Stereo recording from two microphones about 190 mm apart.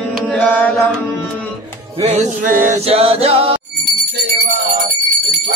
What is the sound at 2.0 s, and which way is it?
Music, 40° right (ahead or behind).